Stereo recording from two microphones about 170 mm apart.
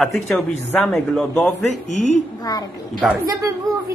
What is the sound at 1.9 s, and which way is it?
Speech, 45° left (ahead or behind).